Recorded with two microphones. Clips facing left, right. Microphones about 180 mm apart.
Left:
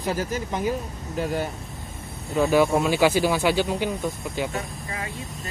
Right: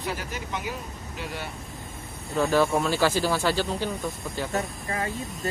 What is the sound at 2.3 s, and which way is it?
Speech, 10° left (ahead or behind).